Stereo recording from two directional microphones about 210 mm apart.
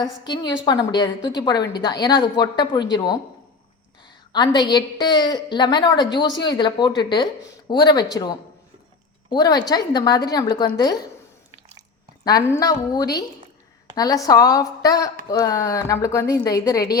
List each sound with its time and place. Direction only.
0.0 s a woman's voice: 20° left (ahead or behind)
4.3 s a woman's voice: 20° left (ahead or behind)
12.2 s a woman's voice: 15° left (ahead or behind)